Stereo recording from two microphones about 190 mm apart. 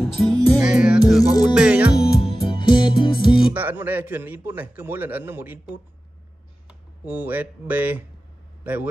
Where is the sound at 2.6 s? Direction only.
25° left (ahead or behind).